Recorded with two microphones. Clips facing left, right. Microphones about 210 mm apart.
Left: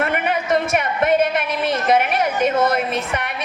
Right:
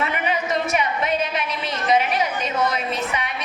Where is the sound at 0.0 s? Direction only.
50° left (ahead or behind).